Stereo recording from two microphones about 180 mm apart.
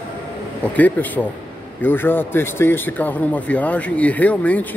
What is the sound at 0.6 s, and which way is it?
A man's voice, 10° left (ahead or behind).